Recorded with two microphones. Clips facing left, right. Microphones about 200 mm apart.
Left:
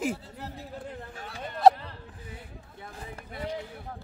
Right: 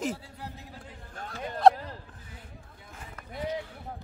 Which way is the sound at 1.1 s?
5° left (ahead or behind).